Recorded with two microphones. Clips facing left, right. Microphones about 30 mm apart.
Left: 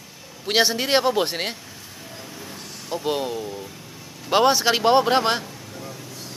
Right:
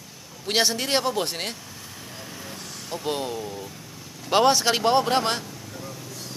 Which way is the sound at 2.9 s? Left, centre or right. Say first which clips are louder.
Left 3 dB; centre.